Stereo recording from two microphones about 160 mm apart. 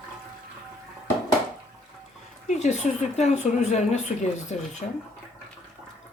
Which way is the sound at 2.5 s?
45° left (ahead or behind).